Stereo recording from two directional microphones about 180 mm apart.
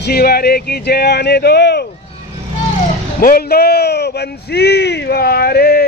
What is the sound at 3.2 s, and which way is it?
Speech, 60° left (ahead or behind).